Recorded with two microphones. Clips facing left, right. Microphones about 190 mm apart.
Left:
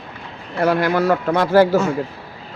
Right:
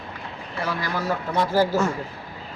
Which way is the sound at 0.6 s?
65° left (ahead or behind).